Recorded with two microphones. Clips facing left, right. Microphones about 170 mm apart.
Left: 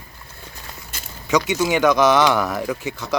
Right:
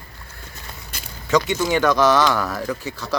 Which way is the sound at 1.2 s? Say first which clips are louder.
Even; 15° left (ahead or behind).